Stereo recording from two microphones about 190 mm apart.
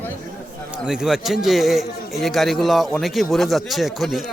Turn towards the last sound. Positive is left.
turn(degrees=0)  # may be behind; listen again after turning